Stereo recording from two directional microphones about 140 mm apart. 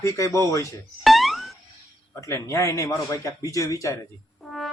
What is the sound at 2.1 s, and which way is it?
A man's voice, 20° left (ahead or behind).